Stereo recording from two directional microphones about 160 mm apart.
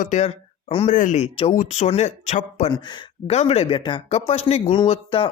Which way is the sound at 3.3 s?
40° left (ahead or behind).